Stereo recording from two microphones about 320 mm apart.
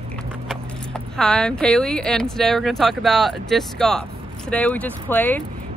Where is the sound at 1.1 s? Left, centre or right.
Centre.